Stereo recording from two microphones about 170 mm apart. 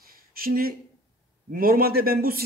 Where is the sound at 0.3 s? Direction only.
60° right (ahead or behind).